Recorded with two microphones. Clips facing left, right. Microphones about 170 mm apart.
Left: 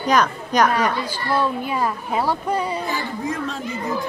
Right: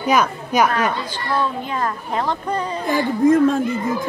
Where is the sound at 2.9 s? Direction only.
50° right (ahead or behind).